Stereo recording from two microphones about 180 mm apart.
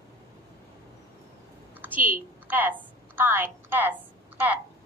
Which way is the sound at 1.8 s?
10° right (ahead or behind).